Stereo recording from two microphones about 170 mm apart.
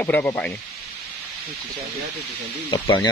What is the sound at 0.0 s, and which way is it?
Speech, 15° left (ahead or behind).